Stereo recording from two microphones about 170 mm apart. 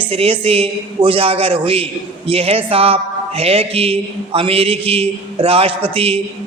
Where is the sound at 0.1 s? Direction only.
35° right (ahead or behind).